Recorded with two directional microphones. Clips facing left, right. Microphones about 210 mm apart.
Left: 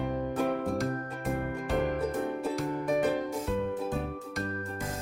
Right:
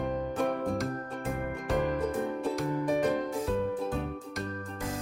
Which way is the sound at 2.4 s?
5° left (ahead or behind).